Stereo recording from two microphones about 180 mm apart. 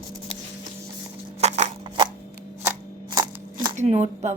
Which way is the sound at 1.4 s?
40° right (ahead or behind).